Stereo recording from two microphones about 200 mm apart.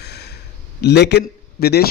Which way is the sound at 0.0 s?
55° left (ahead or behind).